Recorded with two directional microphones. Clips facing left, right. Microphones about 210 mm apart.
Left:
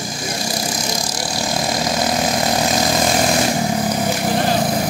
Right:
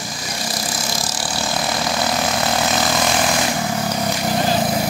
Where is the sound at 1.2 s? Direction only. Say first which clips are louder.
Left 1 dB; 20° left (ahead or behind).